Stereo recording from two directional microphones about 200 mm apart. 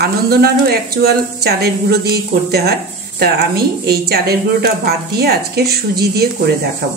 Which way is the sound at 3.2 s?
50° right (ahead or behind).